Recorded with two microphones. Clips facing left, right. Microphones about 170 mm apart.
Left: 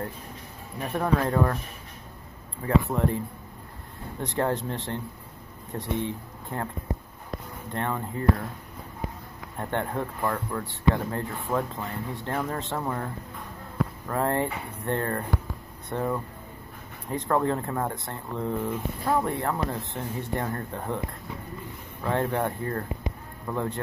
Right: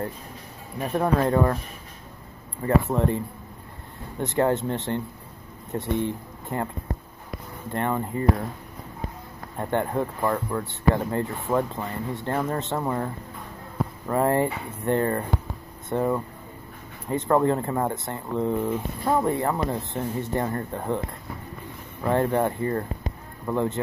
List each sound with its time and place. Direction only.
0.8 s speech: 5° right (ahead or behind)
2.6 s speech: centre (ahead or behind)
4.2 s speech: centre (ahead or behind)
7.7 s speech: 5° right (ahead or behind)
9.6 s speech: 5° right (ahead or behind)
22.0 s speech: 5° right (ahead or behind)